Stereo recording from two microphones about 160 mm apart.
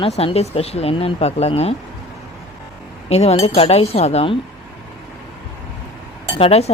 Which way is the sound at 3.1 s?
40° left (ahead or behind).